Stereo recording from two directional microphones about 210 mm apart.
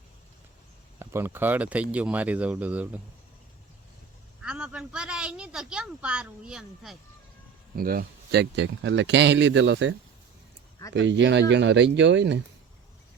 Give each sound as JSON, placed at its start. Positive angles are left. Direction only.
{"t": 0.9, "sound": "speech", "side_deg": -10}
{"t": 4.4, "sound": "speech", "side_deg": -5}
{"t": 7.8, "sound": "speech", "side_deg": -45}
{"t": 10.9, "sound": "speech", "side_deg": -60}